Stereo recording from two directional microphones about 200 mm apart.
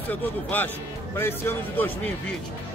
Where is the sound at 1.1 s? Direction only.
10° left (ahead or behind).